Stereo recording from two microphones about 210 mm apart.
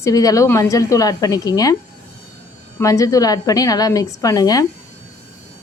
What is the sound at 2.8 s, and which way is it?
A woman's voice, 15° left (ahead or behind).